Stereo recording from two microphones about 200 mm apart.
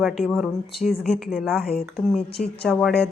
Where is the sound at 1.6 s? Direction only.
50° left (ahead or behind).